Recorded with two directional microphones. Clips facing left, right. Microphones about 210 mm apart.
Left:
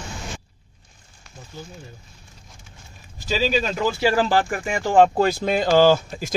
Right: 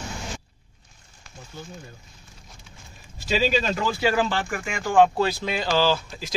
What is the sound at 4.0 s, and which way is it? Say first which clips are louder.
Speech: left 6 dB; 40° left (ahead or behind).